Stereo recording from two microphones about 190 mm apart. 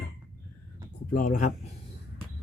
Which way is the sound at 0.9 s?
45° left (ahead or behind).